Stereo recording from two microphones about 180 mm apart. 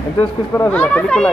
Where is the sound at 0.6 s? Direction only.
10° left (ahead or behind).